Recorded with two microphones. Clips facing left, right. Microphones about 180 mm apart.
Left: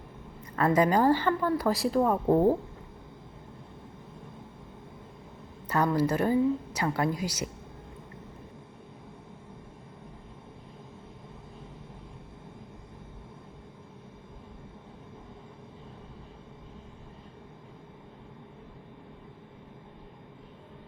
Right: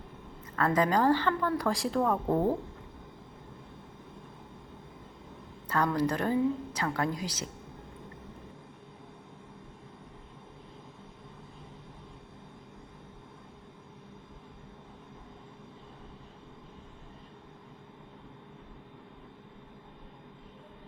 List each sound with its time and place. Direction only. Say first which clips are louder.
0.5 s a woman's voice: left 3 dB; 10° left (ahead or behind)
2.0 s a woman's voice: left 4 dB; 15° left (ahead or behind)
5.6 s a woman's voice: left 2 dB; 10° left (ahead or behind)